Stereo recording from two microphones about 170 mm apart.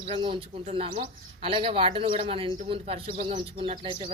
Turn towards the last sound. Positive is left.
turn(degrees=-30)  # may be behind; listen again after turning